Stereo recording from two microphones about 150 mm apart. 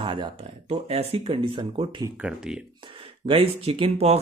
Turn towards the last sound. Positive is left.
turn(degrees=-45)  # may be behind; listen again after turning